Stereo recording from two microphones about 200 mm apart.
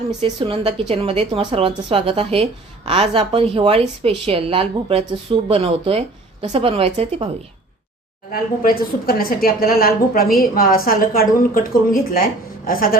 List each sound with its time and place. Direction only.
0.2 s a woman's voice: 30° right (ahead or behind)
8.3 s speech: 45° left (ahead or behind)